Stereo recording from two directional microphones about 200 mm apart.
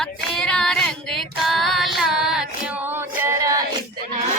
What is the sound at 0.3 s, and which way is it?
Female singing, 5° left (ahead or behind).